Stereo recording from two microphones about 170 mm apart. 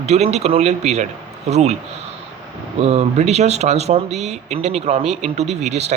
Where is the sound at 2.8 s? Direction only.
40° right (ahead or behind).